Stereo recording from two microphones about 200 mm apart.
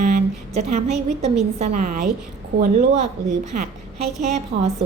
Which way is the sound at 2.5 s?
55° right (ahead or behind).